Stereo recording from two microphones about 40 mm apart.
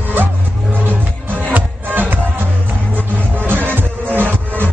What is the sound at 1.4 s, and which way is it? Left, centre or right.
Music, right.